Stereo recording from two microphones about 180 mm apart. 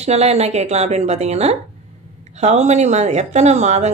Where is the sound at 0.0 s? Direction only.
35° right (ahead or behind).